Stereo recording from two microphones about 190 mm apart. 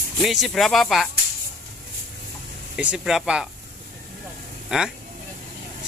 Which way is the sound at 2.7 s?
5° right (ahead or behind).